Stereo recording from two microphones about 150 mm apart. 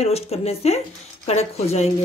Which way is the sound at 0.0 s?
45° left (ahead or behind).